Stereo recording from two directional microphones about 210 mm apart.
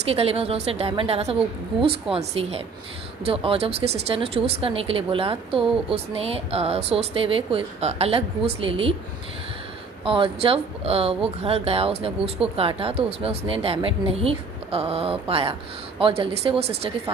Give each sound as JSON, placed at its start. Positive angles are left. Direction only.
{"t": 0.1, "sound": "speech", "side_deg": -30}
{"t": 10.0, "sound": "speech", "side_deg": -25}